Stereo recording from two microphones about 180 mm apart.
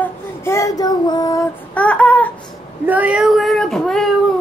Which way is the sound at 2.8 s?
10° right (ahead or behind).